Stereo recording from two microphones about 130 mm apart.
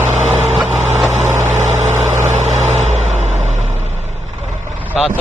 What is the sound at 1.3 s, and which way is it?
Vehicle, 75° right (ahead or behind).